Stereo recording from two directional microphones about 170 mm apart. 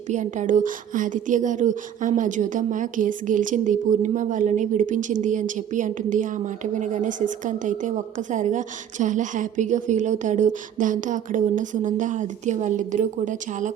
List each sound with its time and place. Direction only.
0.1 s speech: 45° right (ahead or behind)